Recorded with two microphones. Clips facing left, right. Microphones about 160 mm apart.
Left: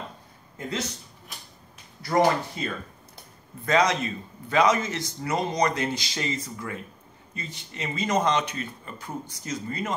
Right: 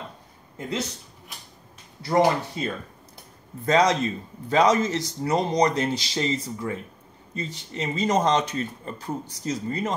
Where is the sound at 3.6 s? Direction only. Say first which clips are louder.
Right 3 dB; 40° right (ahead or behind).